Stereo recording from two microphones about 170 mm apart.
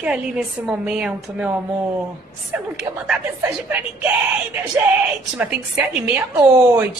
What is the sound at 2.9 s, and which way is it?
Speech, 35° right (ahead or behind).